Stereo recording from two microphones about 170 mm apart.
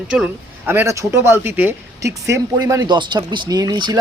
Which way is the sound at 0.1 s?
10° right (ahead or behind).